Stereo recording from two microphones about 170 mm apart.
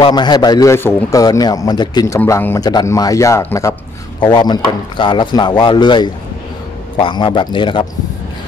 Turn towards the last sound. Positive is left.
turn(degrees=30)  # may be behind; listen again after turning